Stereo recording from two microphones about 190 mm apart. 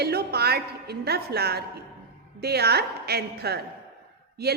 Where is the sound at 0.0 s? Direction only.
55° right (ahead or behind).